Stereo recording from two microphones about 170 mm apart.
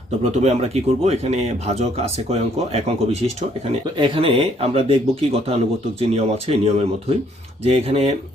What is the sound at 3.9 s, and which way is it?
Speech, 25° right (ahead or behind).